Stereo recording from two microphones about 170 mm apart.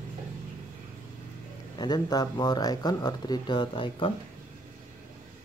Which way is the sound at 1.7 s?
25° left (ahead or behind).